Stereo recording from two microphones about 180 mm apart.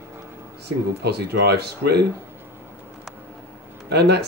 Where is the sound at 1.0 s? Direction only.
65° right (ahead or behind).